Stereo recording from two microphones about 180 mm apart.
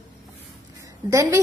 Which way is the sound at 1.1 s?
15° right (ahead or behind).